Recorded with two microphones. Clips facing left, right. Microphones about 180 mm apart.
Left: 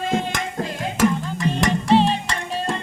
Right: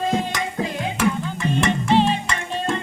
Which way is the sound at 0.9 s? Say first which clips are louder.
Left 4 dB; 35° left (ahead or behind).